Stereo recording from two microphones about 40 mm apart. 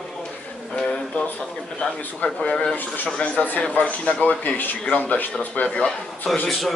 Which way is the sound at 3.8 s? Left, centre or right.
Left.